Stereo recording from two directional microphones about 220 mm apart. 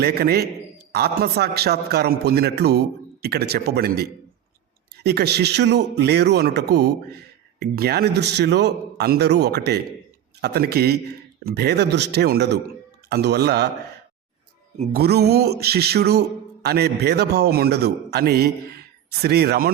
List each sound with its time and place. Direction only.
0.0 s speech: 45° right (ahead or behind)
14.9 s speech: 45° right (ahead or behind)